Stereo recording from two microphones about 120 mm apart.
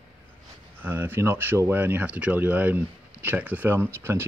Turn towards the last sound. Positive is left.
turn(degrees=-20)  # may be behind; listen again after turning